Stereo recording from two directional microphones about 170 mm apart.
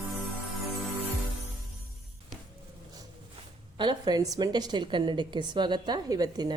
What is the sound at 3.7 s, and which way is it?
A woman's voice, 25° right (ahead or behind).